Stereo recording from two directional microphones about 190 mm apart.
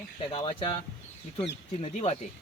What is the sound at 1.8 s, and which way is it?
Speech, 35° left (ahead or behind).